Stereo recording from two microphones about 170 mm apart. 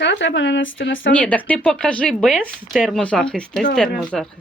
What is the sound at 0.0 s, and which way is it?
Speech, 90° left.